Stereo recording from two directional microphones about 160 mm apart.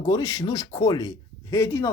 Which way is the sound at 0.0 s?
20° left (ahead or behind).